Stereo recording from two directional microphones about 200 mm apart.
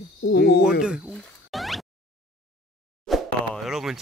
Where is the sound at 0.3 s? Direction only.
50° left (ahead or behind).